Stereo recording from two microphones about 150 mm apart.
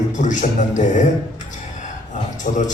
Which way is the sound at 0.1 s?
55° left (ahead or behind).